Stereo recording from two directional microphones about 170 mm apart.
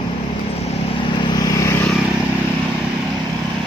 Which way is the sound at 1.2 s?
25° left (ahead or behind).